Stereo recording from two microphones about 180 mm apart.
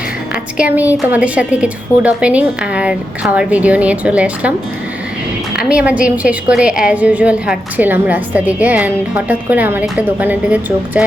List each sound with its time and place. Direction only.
0.5 s a woman's voice: 5° right (ahead or behind)
5.5 s a woman's voice: 5° right (ahead or behind)